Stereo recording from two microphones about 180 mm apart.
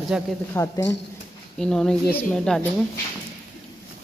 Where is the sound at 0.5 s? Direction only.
15° left (ahead or behind).